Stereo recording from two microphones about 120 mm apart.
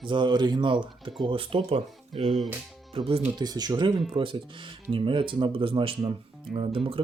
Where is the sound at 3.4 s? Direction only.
35° right (ahead or behind).